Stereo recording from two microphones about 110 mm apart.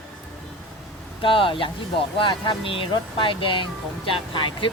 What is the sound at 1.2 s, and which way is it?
Speech, 50° left (ahead or behind).